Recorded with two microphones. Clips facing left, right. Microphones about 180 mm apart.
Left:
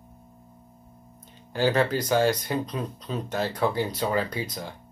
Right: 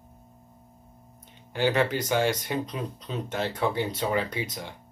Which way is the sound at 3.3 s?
20° right (ahead or behind).